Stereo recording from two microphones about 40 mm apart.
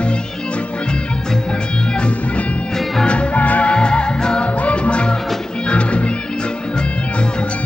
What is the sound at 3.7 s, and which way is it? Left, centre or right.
Music, left.